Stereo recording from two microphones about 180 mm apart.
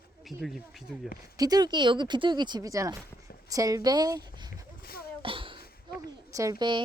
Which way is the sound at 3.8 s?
20° right (ahead or behind).